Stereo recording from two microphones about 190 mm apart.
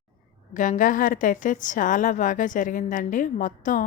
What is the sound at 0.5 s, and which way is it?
A woman's voice, 45° left (ahead or behind).